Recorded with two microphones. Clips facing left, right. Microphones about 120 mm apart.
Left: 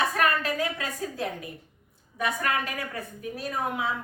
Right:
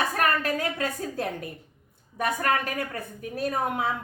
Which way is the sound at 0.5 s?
50° right (ahead or behind).